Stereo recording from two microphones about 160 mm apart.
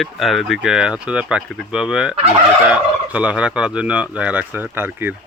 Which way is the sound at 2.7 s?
10° right (ahead or behind).